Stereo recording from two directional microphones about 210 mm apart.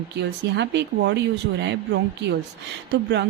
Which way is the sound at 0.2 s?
55° right (ahead or behind).